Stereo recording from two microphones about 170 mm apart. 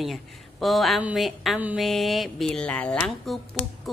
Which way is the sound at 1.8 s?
Centre (ahead or behind).